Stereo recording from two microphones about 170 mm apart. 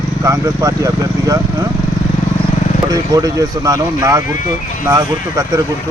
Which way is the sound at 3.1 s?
20° right (ahead or behind).